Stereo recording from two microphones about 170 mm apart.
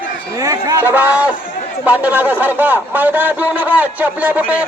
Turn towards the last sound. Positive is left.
turn(degrees=-10)  # may be behind; listen again after turning